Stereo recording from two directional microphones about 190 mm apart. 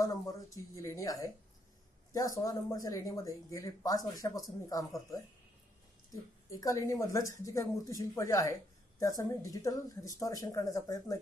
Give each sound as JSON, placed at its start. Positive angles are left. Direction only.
{"t": 0.0, "sound": "speech", "side_deg": 20}
{"t": 6.5, "sound": "speech", "side_deg": 15}